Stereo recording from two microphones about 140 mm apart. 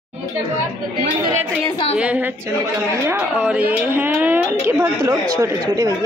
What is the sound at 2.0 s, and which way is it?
Speech, 10° right (ahead or behind).